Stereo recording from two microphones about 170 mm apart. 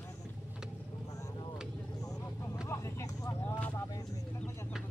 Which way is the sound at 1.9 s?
20° left (ahead or behind).